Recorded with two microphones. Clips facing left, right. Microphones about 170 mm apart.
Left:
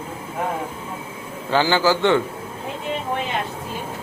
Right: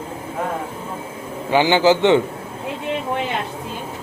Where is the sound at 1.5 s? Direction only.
20° right (ahead or behind).